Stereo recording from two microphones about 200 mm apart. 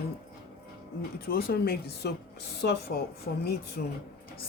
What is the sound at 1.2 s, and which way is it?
Speech, 50° left (ahead or behind).